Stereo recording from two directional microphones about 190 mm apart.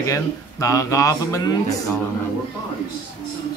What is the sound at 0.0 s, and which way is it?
Speech, 15° left (ahead or behind).